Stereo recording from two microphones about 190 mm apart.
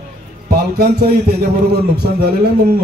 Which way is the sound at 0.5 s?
55° right (ahead or behind).